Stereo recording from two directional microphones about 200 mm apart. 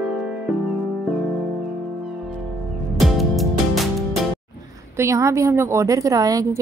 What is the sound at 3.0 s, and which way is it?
Music, centre (ahead or behind).